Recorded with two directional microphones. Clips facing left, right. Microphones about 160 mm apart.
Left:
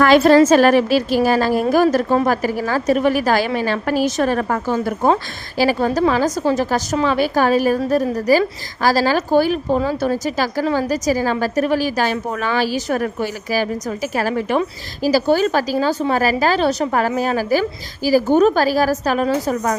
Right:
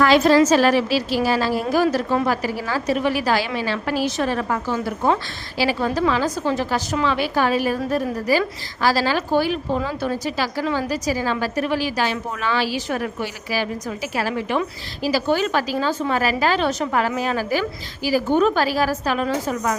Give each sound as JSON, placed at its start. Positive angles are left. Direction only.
{"t": 0.0, "sound": "a woman's voice", "side_deg": 50}